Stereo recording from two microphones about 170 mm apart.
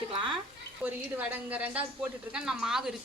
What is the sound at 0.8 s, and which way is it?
A woman's voice, 10° right (ahead or behind).